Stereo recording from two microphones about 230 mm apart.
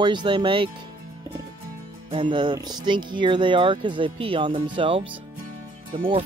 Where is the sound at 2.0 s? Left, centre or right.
Right.